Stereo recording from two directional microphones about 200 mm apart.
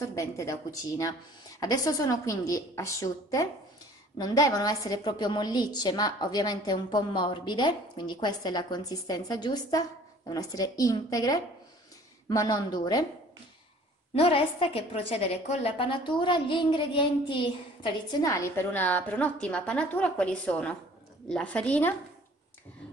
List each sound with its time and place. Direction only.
0.0 s a woman's voice: 15° left (ahead or behind)
14.1 s a woman's voice: 30° left (ahead or behind); by 21.9 s 5° left (ahead or behind)